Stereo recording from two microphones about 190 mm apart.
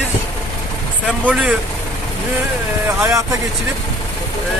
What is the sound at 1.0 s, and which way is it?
Speech, 5° right (ahead or behind).